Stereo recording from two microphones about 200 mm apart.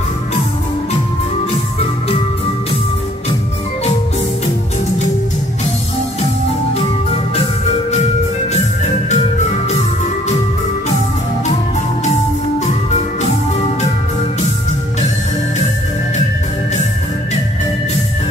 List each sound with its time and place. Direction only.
9.1 s organ: 35° left (ahead or behind)